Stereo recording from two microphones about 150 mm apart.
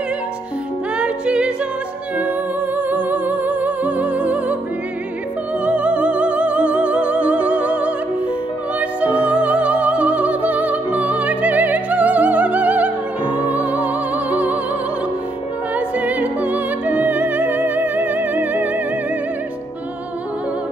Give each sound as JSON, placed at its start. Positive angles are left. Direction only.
{"t": 0.9, "sound": "music", "side_deg": -5}
{"t": 2.9, "sound": "music", "side_deg": -10}
{"t": 5.7, "sound": "music", "side_deg": -10}
{"t": 15.7, "sound": "music", "side_deg": -10}